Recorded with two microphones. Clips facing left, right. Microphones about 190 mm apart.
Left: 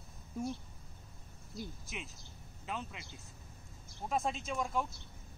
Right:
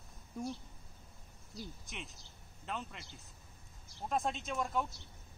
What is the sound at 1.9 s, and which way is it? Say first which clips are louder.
Speech: left 2 dB; centre (ahead or behind).